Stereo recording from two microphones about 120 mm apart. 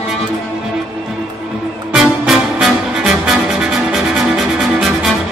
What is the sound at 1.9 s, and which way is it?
Music, 5° right (ahead or behind).